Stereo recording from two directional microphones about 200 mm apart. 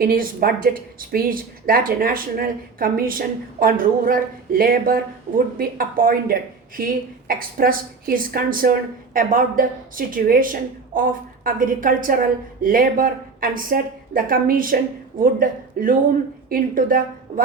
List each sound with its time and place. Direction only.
0.0 s a woman's voice: 45° right (ahead or behind)